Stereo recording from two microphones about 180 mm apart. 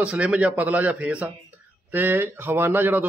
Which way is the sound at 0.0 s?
5° right (ahead or behind).